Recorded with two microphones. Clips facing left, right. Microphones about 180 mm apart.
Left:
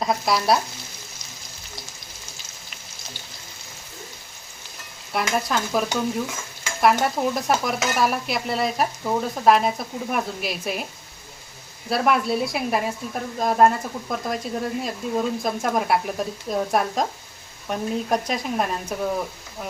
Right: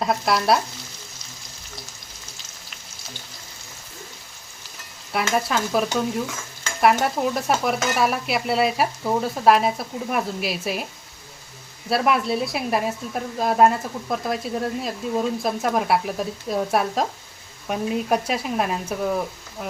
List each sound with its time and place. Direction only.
0.0 s stir: centre (ahead or behind)
5.1 s stir: centre (ahead or behind)
11.9 s stir: centre (ahead or behind)